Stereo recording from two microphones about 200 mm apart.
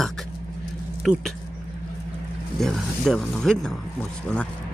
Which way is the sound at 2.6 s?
Centre (ahead or behind).